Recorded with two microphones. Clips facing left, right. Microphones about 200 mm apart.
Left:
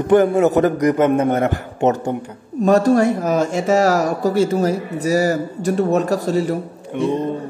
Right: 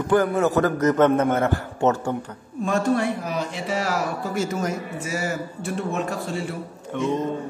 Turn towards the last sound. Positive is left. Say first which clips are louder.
# left 5 dB
turn(degrees=15)  # may be behind; listen again after turning